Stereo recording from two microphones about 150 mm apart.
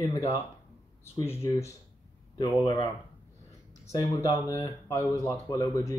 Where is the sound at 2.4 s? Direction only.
30° left (ahead or behind).